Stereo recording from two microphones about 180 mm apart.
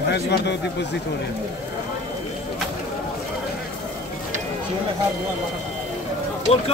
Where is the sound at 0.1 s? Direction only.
65° left (ahead or behind).